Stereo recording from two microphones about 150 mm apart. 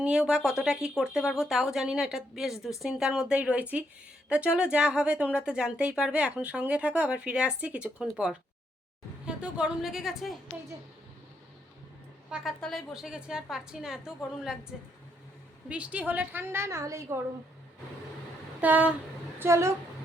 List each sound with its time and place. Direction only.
0.0 s speech: 5° right (ahead or behind)
12.3 s speech: centre (ahead or behind); by 17.2 s 20° right (ahead or behind)
18.6 s speech: 10° right (ahead or behind)